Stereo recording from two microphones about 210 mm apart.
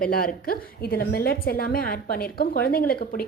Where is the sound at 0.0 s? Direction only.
45° left (ahead or behind).